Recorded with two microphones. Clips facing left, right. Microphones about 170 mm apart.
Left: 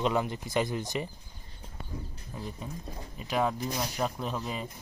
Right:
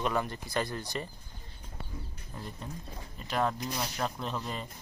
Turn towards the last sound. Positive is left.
turn(degrees=5)  # may be behind; listen again after turning